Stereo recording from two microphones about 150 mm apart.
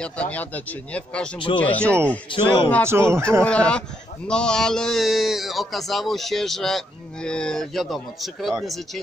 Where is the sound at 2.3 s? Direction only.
35° left (ahead or behind).